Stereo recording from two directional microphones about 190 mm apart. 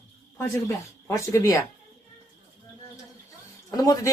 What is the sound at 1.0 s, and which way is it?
Speech, 15° left (ahead or behind).